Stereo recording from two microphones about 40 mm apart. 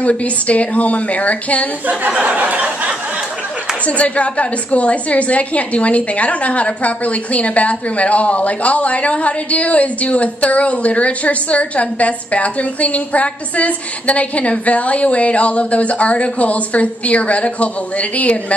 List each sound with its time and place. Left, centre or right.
0.0 s a woman's voice: left
2.1 s a sound: right
3.8 s a woman's voice: left